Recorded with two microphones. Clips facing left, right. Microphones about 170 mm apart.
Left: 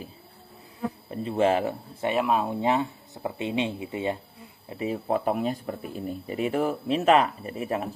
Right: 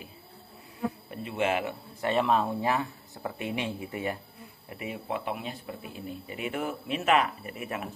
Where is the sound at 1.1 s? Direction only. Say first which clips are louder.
Left 7 dB; 35° left (ahead or behind).